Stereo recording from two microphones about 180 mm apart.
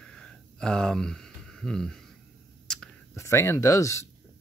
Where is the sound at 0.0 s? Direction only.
5° left (ahead or behind).